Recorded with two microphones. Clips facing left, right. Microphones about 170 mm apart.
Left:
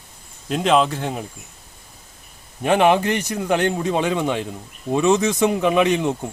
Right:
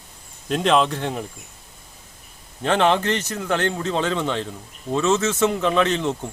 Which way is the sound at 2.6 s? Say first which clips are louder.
Left 3 dB; 10° left (ahead or behind).